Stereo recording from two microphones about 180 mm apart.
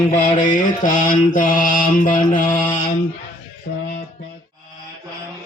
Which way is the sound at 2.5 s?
25° left (ahead or behind).